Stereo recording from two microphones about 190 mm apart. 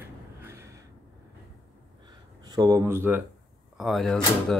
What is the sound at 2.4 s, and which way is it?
Speech, 20° right (ahead or behind).